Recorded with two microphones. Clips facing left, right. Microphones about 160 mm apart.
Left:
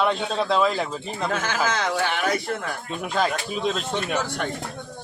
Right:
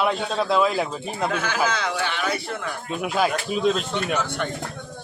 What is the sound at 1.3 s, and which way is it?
A man's voice, 45° left (ahead or behind).